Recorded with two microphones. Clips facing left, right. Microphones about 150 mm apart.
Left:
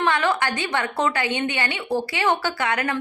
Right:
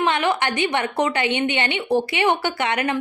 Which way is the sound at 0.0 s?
15° right (ahead or behind).